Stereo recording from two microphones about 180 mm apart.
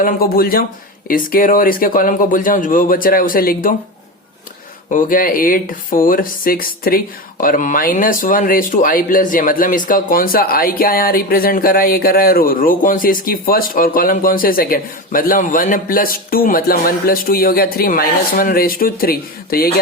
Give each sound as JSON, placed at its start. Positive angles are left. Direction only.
{"t": 0.0, "sound": "speech", "side_deg": 55}
{"t": 4.9, "sound": "speech", "side_deg": 50}